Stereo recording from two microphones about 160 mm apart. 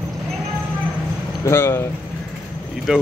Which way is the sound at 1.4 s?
15° left (ahead or behind).